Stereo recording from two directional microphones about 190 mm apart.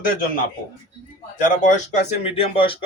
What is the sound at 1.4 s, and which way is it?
Speech, 40° left (ahead or behind).